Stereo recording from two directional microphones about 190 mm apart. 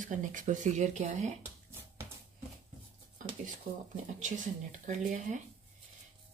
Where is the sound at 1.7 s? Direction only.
10° right (ahead or behind).